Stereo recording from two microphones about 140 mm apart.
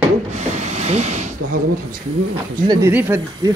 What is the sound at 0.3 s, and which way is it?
Rub, 55° right (ahead or behind).